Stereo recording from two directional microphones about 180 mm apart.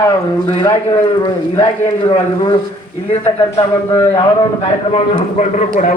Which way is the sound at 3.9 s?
15° left (ahead or behind).